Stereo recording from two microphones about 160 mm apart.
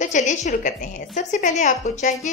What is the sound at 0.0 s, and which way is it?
Speech, 50° left (ahead or behind).